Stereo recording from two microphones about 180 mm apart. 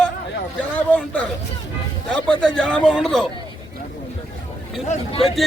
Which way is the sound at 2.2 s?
5° left (ahead or behind).